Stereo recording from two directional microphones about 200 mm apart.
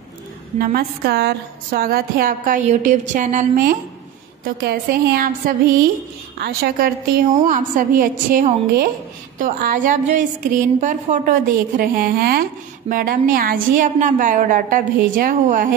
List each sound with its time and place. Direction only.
0.6 s a woman's voice: 45° right (ahead or behind)
6.3 s a woman's voice: 50° right (ahead or behind)